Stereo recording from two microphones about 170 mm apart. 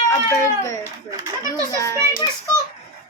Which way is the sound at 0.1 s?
20° left (ahead or behind).